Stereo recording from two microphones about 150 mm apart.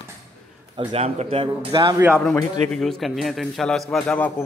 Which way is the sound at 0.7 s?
45° right (ahead or behind).